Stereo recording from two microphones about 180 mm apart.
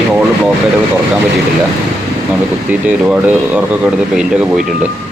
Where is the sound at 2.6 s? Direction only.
5° right (ahead or behind).